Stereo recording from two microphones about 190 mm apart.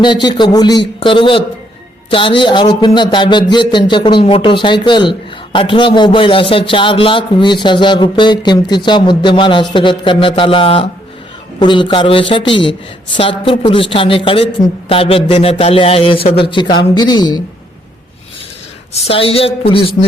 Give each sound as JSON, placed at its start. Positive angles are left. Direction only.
{"t": 0.0, "sound": "a man's voice", "side_deg": 25}
{"t": 19.0, "sound": "a man's voice", "side_deg": 30}